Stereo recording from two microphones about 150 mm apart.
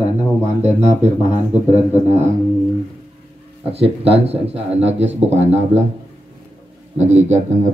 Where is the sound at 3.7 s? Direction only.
40° right (ahead or behind).